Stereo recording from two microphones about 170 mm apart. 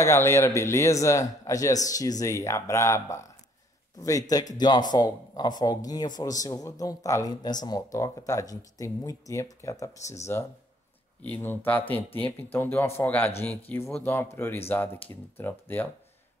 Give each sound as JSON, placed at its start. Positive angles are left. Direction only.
{"t": 0.0, "sound": "a man's voice", "side_deg": 15}
{"t": 11.2, "sound": "a man's voice", "side_deg": 10}